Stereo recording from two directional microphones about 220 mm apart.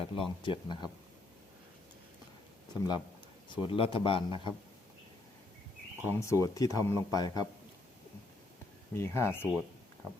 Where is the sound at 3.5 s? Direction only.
25° left (ahead or behind).